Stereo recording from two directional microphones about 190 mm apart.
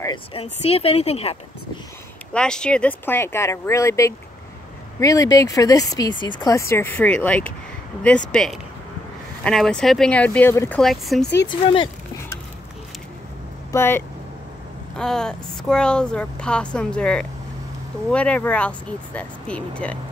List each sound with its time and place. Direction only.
0.0 s speech: 25° left (ahead or behind)
2.3 s speech: 5° left (ahead or behind); by 6.6 s 20° left (ahead or behind)
6.7 s speech: 10° left (ahead or behind)
10.8 s speech: centre (ahead or behind)
11.3 s speech: 25° left (ahead or behind)
13.7 s speech: 15° left (ahead or behind)